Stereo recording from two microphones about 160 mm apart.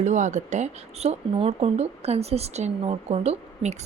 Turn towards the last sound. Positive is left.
turn(degrees=-45)  # may be behind; listen again after turning